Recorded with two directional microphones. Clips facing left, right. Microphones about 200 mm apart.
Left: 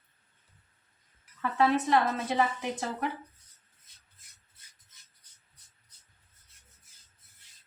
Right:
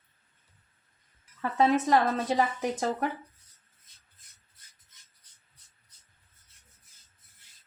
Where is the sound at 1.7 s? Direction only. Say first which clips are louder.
Right 2 dB; 40° right (ahead or behind).